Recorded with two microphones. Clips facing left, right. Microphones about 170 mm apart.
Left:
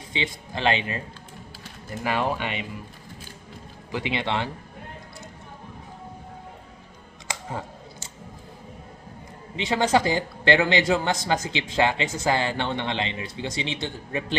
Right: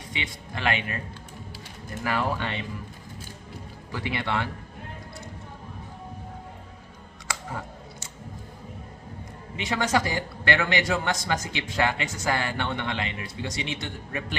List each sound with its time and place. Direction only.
0.1 s a man's voice: 25° left (ahead or behind)
2.0 s speech: 20° left (ahead or behind)
3.9 s a man's voice: 20° left (ahead or behind)
9.6 s a man's voice: 25° left (ahead or behind)